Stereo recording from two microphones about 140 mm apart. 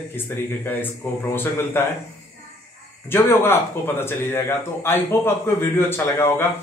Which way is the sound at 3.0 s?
15° left (ahead or behind).